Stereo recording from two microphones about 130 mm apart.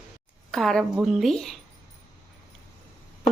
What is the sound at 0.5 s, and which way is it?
Speech, 5° left (ahead or behind).